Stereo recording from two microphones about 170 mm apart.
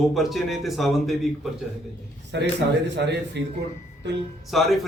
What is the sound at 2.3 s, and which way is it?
A man's voice, 90° right.